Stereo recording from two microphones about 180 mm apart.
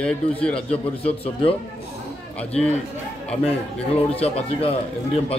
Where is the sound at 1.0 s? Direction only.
30° left (ahead or behind).